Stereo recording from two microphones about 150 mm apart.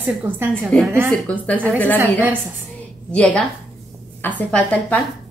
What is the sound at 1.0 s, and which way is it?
Speech, 5° left (ahead or behind).